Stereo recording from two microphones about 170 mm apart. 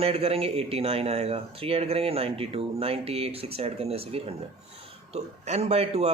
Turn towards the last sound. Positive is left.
turn(degrees=-40)  # may be behind; listen again after turning